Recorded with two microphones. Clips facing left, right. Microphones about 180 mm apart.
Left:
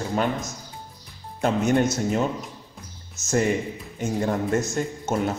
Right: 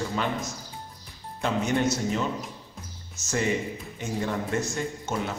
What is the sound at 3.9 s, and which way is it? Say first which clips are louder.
A man's voice: left 5 dB; 45° left (ahead or behind).